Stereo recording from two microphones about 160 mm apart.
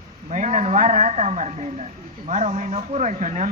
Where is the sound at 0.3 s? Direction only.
45° right (ahead or behind).